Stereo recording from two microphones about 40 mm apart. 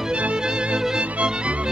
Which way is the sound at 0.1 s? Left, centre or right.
Right.